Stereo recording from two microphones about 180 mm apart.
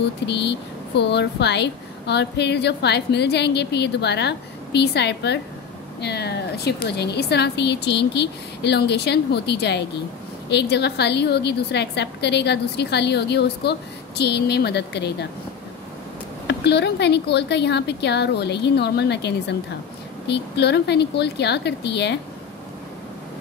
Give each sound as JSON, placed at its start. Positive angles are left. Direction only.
{"t": 0.3, "sound": "a woman's voice", "side_deg": 70}
{"t": 16.4, "sound": "a woman's voice", "side_deg": 70}